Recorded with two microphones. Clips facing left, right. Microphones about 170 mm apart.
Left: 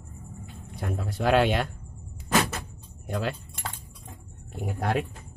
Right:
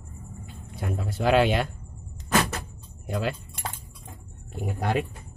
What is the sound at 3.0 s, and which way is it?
Speech, centre (ahead or behind).